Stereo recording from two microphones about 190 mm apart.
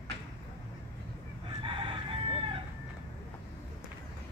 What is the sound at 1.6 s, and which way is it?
Chicken, 25° right (ahead or behind).